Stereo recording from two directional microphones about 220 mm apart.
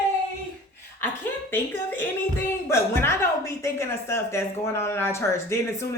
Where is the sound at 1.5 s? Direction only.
10° left (ahead or behind).